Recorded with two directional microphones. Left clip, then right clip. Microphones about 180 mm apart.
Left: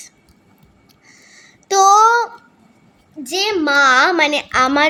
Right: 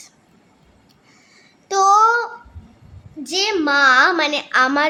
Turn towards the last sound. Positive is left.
turn(degrees=20)  # may be behind; listen again after turning